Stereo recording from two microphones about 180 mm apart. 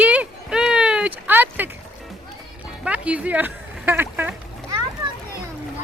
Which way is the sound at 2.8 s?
5° right (ahead or behind).